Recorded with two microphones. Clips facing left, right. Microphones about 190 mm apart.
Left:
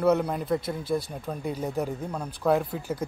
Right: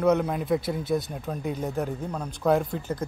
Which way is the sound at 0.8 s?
30° left (ahead or behind).